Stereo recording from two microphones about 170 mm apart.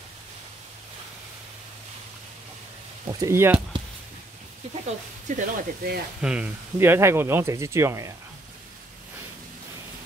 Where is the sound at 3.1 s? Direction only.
20° right (ahead or behind).